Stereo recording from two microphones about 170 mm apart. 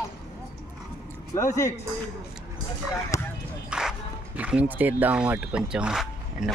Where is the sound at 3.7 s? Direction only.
5° right (ahead or behind).